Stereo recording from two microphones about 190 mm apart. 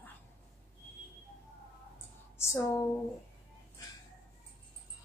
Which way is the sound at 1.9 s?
15° left (ahead or behind).